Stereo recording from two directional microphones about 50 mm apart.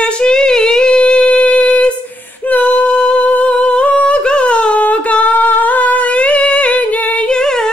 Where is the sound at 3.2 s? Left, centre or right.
Left.